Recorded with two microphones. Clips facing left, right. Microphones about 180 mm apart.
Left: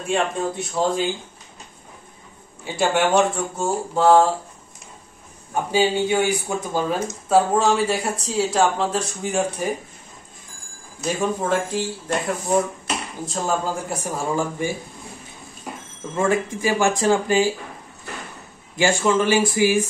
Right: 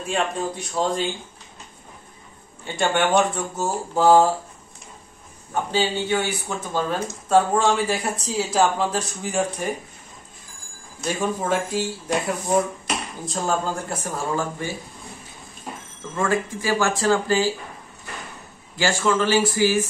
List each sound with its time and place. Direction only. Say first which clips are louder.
0.1 s speech: left 3 dB; centre (ahead or behind)
2.6 s speech: left 2 dB; 5° left (ahead or behind)
5.5 s speech: left 3 dB; 10° left (ahead or behind)
11.0 s speech: left 2 dB; centre (ahead or behind)
14.0 s speech: left 2 dB; 15° left (ahead or behind)
16.2 s speech: left 2 dB; 20° left (ahead or behind)
18.8 s speech: left 2 dB; 20° left (ahead or behind)